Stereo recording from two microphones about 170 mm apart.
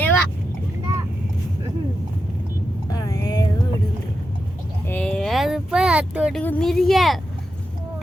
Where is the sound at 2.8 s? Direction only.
20° left (ahead or behind).